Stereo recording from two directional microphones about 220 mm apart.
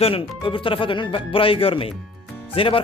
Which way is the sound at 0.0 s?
25° left (ahead or behind).